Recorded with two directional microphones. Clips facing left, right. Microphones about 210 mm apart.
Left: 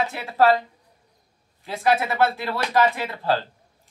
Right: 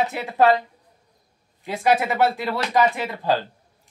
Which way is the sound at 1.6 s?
20° right (ahead or behind).